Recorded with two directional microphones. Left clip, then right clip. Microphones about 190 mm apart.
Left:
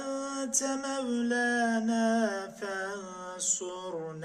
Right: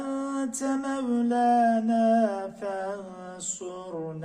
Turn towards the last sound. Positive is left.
turn(degrees=15)  # may be behind; listen again after turning